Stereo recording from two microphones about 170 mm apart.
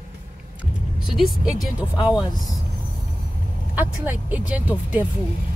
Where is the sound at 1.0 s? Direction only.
5° right (ahead or behind).